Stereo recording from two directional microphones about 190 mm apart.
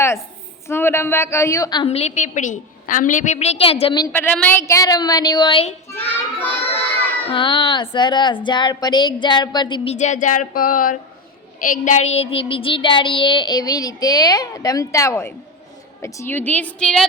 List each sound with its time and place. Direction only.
0.7 s a woman's voice: 10° left (ahead or behind)
4.1 s child singing: 10° left (ahead or behind); by 5.7 s 25° left (ahead or behind)
5.9 s a woman's voice: 10° left (ahead or behind)
7.3 s child singing: 25° left (ahead or behind)
16.0 s a woman's voice: 15° left (ahead or behind)